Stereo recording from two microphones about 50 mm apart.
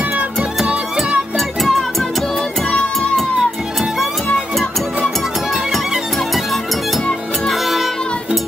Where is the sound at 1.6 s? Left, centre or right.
Centre.